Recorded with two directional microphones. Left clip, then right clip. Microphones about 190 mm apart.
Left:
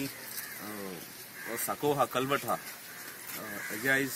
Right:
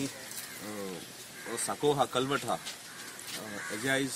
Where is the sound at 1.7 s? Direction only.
5° left (ahead or behind).